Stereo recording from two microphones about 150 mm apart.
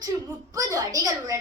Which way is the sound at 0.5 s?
20° right (ahead or behind).